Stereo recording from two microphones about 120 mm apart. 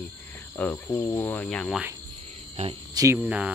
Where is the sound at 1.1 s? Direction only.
15° left (ahead or behind).